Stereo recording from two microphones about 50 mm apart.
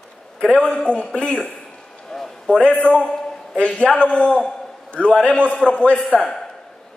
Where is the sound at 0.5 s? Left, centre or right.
Centre.